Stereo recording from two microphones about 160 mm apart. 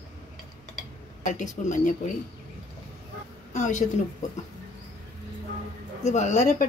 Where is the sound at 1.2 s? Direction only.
50° left (ahead or behind).